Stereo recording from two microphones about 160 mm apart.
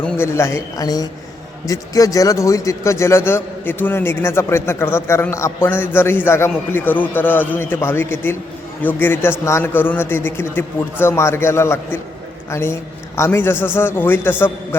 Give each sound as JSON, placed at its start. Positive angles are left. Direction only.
{"t": 0.0, "sound": "a man's voice", "side_deg": 15}